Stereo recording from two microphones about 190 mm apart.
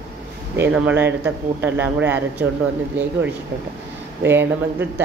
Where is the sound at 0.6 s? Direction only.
10° right (ahead or behind).